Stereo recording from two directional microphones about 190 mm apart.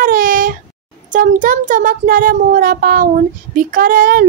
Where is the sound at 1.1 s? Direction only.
45° right (ahead or behind).